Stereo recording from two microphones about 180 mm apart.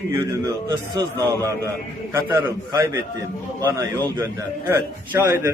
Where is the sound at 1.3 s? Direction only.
15° right (ahead or behind).